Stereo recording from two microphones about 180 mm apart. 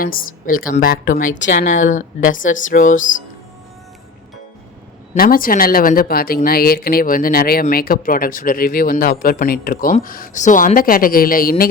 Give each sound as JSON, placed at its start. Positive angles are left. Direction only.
{"t": 0.0, "sound": "speech", "side_deg": 50}
{"t": 5.1, "sound": "speech", "side_deg": 55}